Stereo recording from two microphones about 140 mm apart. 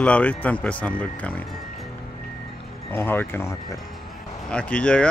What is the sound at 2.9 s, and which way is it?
Speech, 15° left (ahead or behind).